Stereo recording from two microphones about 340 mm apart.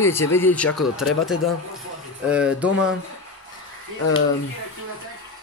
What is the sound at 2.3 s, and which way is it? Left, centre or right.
Speech, centre.